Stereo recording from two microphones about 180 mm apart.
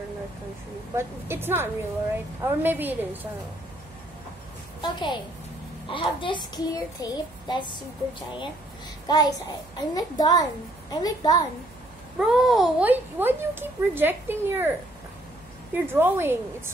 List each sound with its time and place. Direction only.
0.9 s a woman's voice: 15° right (ahead or behind)
4.8 s child singing: 25° left (ahead or behind)
9.0 s a child's voice: 20° left (ahead or behind)
9.9 s child singing: 20° left (ahead or behind)
12.2 s a woman's voice: centre (ahead or behind)
15.7 s a woman's voice: 10° right (ahead or behind)